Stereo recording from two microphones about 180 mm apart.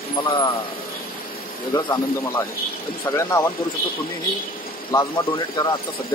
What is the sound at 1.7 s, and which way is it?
Speech, 15° left (ahead or behind).